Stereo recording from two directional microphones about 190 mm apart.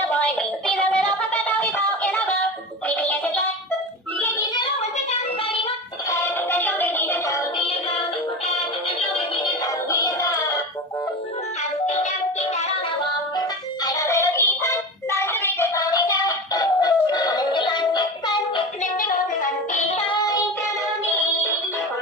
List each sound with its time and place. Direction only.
0.2 s music: 5° left (ahead or behind)
2.9 s music: 10° left (ahead or behind)
6.1 s music: 10° left (ahead or behind)
9.1 s synthetic singing: 25° left (ahead or behind)
13.8 s music: 15° left (ahead or behind)
18.8 s music: 45° left (ahead or behind); by 20.4 s 20° left (ahead or behind)